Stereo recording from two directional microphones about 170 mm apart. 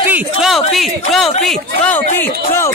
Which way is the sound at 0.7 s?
Centre (ahead or behind).